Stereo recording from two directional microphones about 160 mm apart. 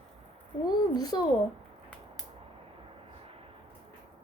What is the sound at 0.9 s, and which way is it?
Speech, 25° left (ahead or behind).